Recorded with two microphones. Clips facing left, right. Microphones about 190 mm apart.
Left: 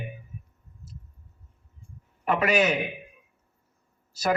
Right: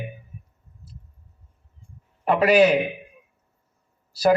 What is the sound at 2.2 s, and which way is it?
Speech, 35° right (ahead or behind).